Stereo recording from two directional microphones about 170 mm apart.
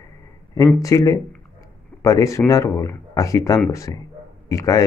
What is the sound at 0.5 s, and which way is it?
Speech, 20° left (ahead or behind).